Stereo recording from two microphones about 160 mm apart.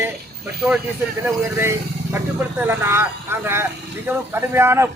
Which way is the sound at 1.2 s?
15° right (ahead or behind).